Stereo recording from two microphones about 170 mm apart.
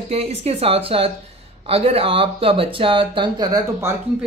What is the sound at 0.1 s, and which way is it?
Speech, 40° right (ahead or behind).